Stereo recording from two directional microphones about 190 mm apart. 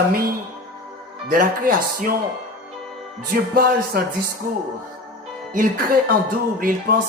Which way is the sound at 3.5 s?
55° right (ahead or behind).